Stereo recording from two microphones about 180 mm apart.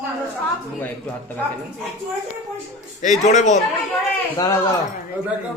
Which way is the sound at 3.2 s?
40° left (ahead or behind).